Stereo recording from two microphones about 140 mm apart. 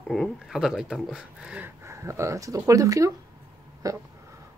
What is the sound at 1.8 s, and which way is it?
Speech, 20° right (ahead or behind).